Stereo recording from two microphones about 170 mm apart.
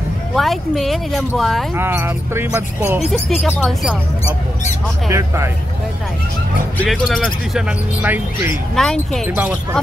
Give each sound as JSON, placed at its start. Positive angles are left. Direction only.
{"t": 0.4, "sound": "speech", "side_deg": 0}
{"t": 1.8, "sound": "speech", "side_deg": -15}
{"t": 3.1, "sound": "speech", "side_deg": 0}
{"t": 5.1, "sound": "speech", "side_deg": -15}
{"t": 6.8, "sound": "speech", "side_deg": 0}
{"t": 8.7, "sound": "speech", "side_deg": 0}
{"t": 9.3, "sound": "speech", "side_deg": -10}